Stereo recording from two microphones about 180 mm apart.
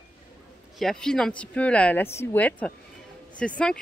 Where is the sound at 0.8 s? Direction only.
5° left (ahead or behind).